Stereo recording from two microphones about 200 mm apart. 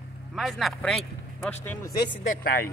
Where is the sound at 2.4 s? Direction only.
50° left (ahead or behind).